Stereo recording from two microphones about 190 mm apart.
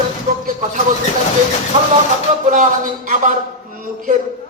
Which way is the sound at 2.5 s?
40° right (ahead or behind).